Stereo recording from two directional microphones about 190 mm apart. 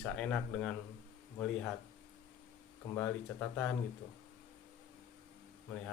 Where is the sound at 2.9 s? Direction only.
10° left (ahead or behind).